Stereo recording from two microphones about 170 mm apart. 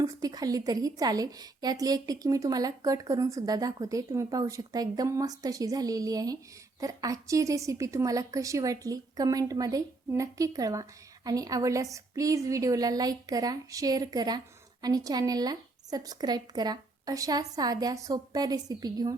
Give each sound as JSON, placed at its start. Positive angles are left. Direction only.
{"t": 0.0, "sound": "a woman's voice", "side_deg": -20}